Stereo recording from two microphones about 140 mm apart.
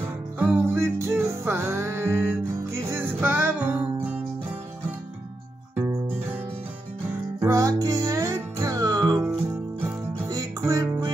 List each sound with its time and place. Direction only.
0.4 s music: 20° right (ahead or behind)
7.3 s music: 20° right (ahead or behind)
10.2 s music: 25° right (ahead or behind)